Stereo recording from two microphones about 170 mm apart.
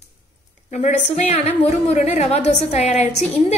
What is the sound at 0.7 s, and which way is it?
A woman's voice, 45° left (ahead or behind).